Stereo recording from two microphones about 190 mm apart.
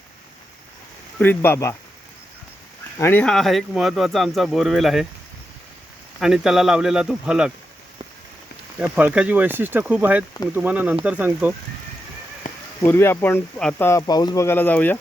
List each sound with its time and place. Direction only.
1.2 s speech: 10° left (ahead or behind)
3.0 s speech: 10° left (ahead or behind)
6.1 s speech: centre (ahead or behind)
8.8 s speech: 10° right (ahead or behind)
12.4 s a sound: 45° left (ahead or behind)
12.8 s speech: 15° left (ahead or behind)